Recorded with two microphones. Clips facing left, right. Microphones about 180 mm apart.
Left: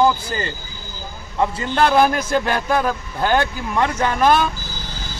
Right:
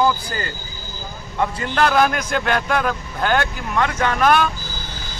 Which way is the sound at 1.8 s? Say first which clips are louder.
Left 2 dB; 30° left (ahead or behind).